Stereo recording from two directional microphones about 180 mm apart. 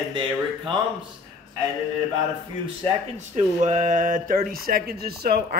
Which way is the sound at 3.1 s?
40° right (ahead or behind).